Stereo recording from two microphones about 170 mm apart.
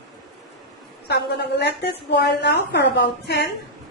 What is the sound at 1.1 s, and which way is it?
A woman's voice, 75° left (ahead or behind).